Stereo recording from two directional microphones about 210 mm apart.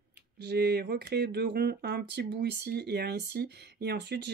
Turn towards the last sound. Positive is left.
turn(degrees=-50)  # may be behind; listen again after turning